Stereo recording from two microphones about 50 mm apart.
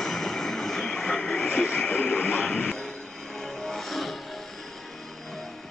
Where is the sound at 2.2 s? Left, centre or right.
Centre.